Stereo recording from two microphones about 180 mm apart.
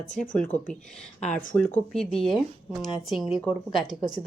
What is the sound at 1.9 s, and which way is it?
Speech, centre (ahead or behind).